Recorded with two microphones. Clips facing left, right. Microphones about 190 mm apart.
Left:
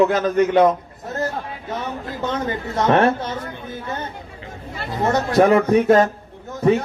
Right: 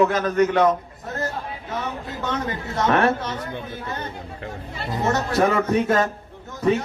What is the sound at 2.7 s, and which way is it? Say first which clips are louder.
Speech: left 3 dB; 30° left (ahead or behind).